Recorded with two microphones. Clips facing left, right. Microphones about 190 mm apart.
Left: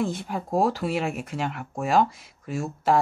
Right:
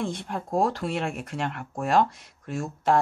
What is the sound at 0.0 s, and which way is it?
Speech, centre (ahead or behind).